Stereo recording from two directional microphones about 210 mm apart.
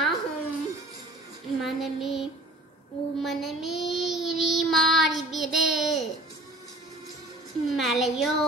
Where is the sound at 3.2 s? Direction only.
Centre (ahead or behind).